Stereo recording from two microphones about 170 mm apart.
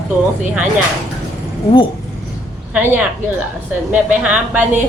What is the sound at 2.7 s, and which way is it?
A woman's voice, 10° right (ahead or behind).